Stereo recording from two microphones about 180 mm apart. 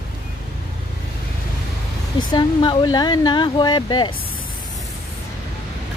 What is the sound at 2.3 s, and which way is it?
Speech, 25° left (ahead or behind).